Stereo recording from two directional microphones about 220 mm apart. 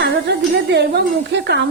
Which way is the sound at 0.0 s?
50° right (ahead or behind).